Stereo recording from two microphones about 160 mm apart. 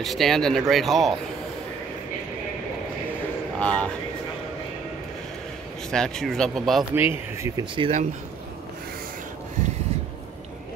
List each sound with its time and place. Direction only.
0.0 s speech: centre (ahead or behind)
3.5 s speech: 5° left (ahead or behind)
5.9 s speech: 5° left (ahead or behind)
7.0 s speech: 15° right (ahead or behind)
7.7 s speech: 35° right (ahead or behind)